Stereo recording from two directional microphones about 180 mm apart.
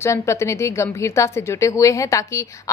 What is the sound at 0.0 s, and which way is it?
A woman's voice, 15° left (ahead or behind).